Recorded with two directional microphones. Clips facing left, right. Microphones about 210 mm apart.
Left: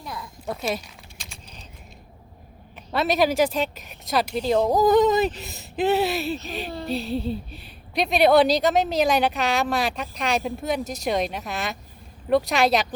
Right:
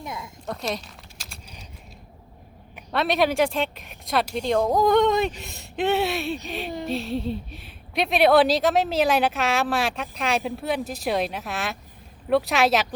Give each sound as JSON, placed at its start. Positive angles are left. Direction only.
{"t": 0.0, "sound": "a sound", "side_deg": -20}
{"t": 0.4, "sound": "speech", "side_deg": 5}
{"t": 1.2, "sound": "typing", "side_deg": -5}
{"t": 2.9, "sound": "speech", "side_deg": 0}